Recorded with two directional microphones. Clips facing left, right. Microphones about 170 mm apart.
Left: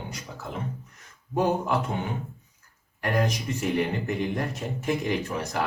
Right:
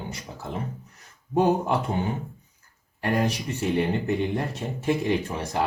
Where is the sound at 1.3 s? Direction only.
30° right (ahead or behind).